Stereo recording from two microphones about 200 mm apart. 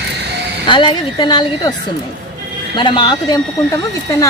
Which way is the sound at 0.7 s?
25° left (ahead or behind).